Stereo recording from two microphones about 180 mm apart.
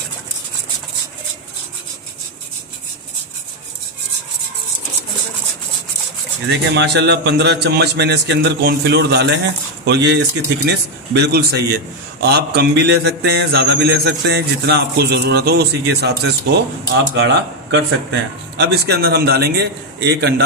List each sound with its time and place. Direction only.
6.5 s a man's voice: 70° right (ahead or behind)
18.6 s a man's voice: 65° right (ahead or behind)